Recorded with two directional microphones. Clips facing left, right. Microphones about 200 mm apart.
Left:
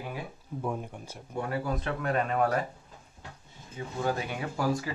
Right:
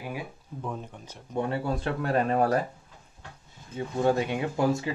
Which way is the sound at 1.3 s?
25° right (ahead or behind).